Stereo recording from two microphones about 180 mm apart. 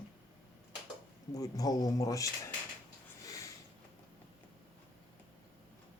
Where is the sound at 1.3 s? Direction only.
20° left (ahead or behind).